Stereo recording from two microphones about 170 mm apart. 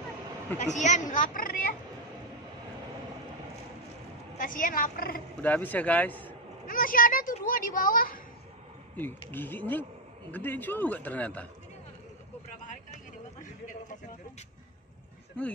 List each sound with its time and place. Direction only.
0.6 s speech: 45° left (ahead or behind)
4.4 s a child's voice: 55° left (ahead or behind)
5.4 s a man's voice: 10° left (ahead or behind)
6.7 s a child's voice: 55° left (ahead or behind)
8.9 s a man's voice: 10° left (ahead or behind)
15.4 s a man's voice: 10° left (ahead or behind)